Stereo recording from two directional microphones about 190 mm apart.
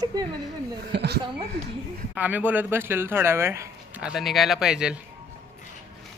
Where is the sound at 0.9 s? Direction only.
60° right (ahead or behind).